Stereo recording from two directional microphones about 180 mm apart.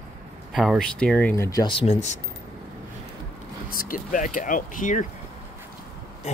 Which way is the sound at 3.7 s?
50° left (ahead or behind).